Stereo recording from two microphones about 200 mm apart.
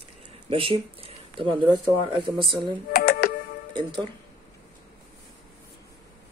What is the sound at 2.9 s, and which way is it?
Speech, 50° left (ahead or behind).